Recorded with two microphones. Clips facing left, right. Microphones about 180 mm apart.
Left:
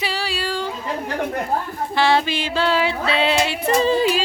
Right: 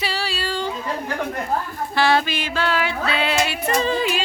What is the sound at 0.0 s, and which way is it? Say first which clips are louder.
Yodeling: left 1 dB; 15° left (ahead or behind).